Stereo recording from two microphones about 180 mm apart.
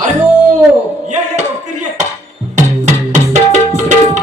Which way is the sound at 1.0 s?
40° right (ahead or behind).